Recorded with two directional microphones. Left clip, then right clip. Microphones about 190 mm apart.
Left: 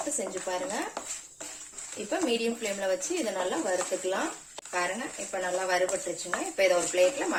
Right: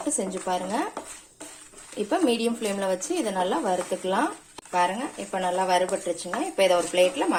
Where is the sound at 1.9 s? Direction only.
40° right (ahead or behind).